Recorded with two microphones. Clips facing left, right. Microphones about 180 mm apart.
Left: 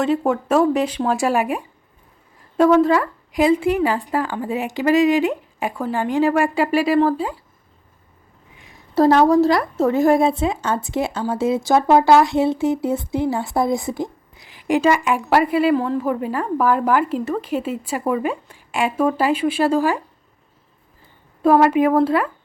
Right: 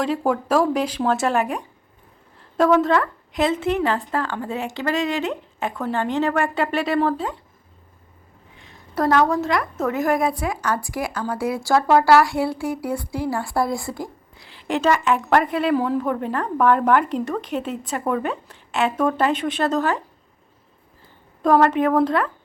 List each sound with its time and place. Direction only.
0.0 s a woman's voice: 5° left (ahead or behind)
2.8 s a woman's voice: 5° left (ahead or behind)
9.0 s a woman's voice: 30° left (ahead or behind); by 15.7 s 5° left (ahead or behind)
15.7 s speech: 5° right (ahead or behind)
16.0 s a woman's voice: 5° left (ahead or behind)
21.4 s a woman's voice: 10° left (ahead or behind)